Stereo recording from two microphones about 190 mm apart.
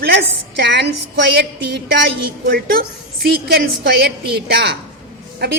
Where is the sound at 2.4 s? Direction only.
50° right (ahead or behind).